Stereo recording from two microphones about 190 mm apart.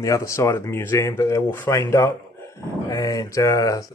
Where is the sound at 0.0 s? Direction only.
15° left (ahead or behind).